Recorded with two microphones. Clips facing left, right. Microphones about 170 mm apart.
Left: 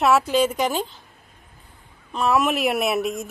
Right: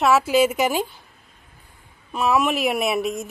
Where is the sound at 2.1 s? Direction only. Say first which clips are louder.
Even; centre (ahead or behind).